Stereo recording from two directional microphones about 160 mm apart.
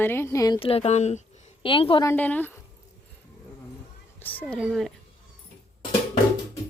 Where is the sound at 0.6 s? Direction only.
35° left (ahead or behind).